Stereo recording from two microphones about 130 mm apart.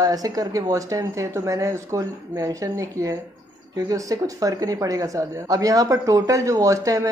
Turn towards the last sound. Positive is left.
turn(degrees=-25)  # may be behind; listen again after turning